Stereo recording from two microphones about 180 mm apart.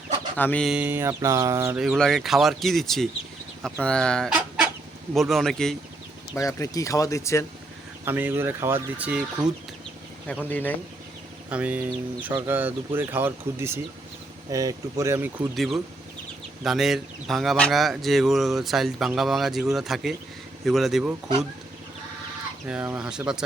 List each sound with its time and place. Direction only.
0.3 s speech: 10° left (ahead or behind)
0.7 s speech: 10° right (ahead or behind)
1.8 s speech: centre (ahead or behind)
3.6 s chicken: 5° left (ahead or behind)
5.1 s speech: centre (ahead or behind)
6.3 s speech: 20° left (ahead or behind)
8.0 s speech: 10° right (ahead or behind)
10.2 s speech: 10° left (ahead or behind)
11.4 s speech: 10° right (ahead or behind)
15.5 s speech: centre (ahead or behind)
22.6 s speech: 10° right (ahead or behind)